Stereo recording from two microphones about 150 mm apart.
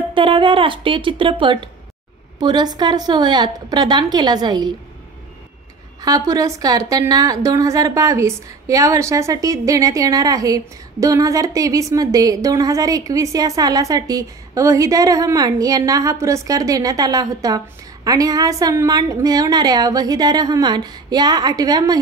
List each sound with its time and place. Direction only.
0.1 s speech: 35° right (ahead or behind)
2.4 s a woman's voice: 30° right (ahead or behind)
5.9 s a woman's voice: 25° right (ahead or behind)